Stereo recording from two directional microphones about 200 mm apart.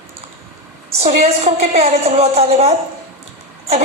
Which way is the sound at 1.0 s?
30° right (ahead or behind).